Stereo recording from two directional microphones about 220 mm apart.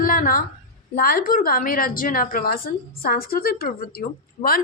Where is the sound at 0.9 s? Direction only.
40° left (ahead or behind).